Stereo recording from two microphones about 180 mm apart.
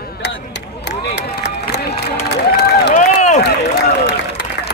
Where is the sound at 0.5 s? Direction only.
70° left (ahead or behind).